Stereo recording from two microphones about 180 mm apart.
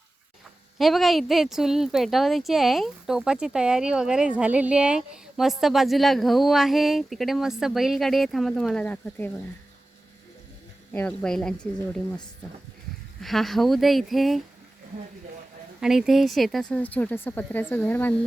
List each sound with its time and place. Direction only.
0.8 s speech: centre (ahead or behind)
10.9 s speech: 5° left (ahead or behind)
13.2 s speech: centre (ahead or behind)
15.8 s speech: centre (ahead or behind)